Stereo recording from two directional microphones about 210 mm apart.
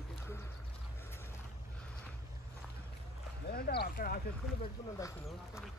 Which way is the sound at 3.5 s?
50° left (ahead or behind).